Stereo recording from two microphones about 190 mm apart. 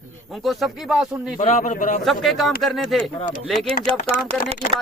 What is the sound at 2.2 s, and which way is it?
Speech, centre (ahead or behind).